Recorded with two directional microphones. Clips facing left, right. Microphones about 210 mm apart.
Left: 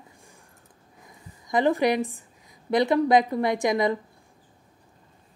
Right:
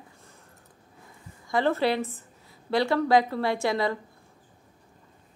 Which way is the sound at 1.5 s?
15° left (ahead or behind).